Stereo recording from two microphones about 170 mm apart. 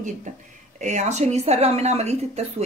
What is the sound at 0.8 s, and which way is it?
Speech, 45° right (ahead or behind).